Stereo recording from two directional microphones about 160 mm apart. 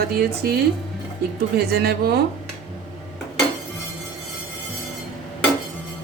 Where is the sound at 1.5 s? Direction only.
80° right.